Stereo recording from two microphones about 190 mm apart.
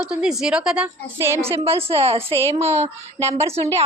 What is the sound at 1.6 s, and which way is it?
Speech, 30° right (ahead or behind).